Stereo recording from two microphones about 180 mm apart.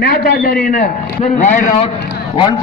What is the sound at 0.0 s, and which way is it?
A man's voice, 60° left (ahead or behind).